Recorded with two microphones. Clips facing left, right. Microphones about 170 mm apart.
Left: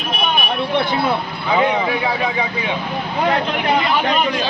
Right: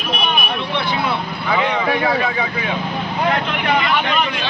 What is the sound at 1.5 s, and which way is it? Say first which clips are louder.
Speech: left 3 dB; 15° left (ahead or behind).